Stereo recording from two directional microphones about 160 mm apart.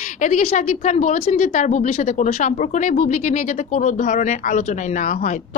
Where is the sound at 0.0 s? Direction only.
50° left (ahead or behind).